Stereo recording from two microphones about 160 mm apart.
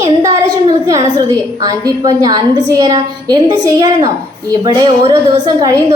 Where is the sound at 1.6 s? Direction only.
25° right (ahead or behind).